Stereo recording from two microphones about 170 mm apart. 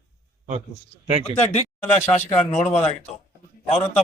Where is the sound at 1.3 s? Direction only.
40° left (ahead or behind).